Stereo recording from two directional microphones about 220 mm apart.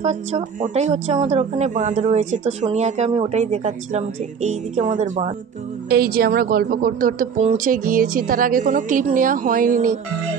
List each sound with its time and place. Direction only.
0.0 s speech: 30° right (ahead or behind)
5.9 s speech: 45° right (ahead or behind)